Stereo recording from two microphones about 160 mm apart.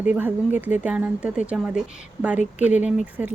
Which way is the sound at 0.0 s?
10° right (ahead or behind).